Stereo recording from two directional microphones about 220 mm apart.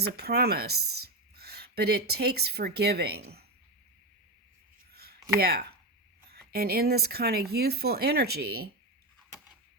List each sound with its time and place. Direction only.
0.0 s speech: 45° right (ahead or behind)
4.9 s a sound: 45° right (ahead or behind)
5.4 s speech: 45° right (ahead or behind)